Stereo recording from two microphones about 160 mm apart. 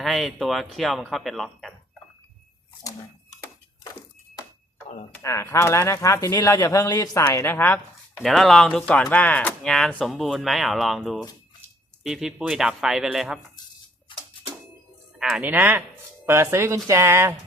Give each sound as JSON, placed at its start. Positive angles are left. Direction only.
{"t": 0.0, "sound": "speech", "side_deg": 0}
{"t": 5.2, "sound": "speech", "side_deg": 20}
{"t": 8.1, "sound": "speech", "side_deg": 0}
{"t": 14.1, "sound": "music", "side_deg": 30}
{"t": 15.2, "sound": "speech", "side_deg": -5}